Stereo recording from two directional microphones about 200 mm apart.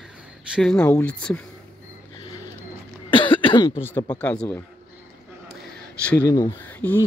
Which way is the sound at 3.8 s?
10° left (ahead or behind).